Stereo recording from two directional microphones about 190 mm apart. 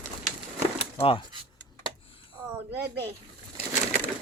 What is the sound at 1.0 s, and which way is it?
Speech, 30° left (ahead or behind).